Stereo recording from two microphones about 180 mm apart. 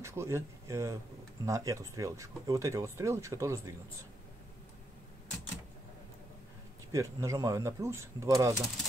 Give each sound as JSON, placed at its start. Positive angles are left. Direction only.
{"t": 0.0, "sound": "speech", "side_deg": -15}
{"t": 6.9, "sound": "speech", "side_deg": -15}